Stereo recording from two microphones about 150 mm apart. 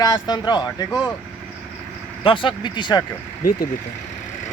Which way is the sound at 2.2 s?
35° left (ahead or behind).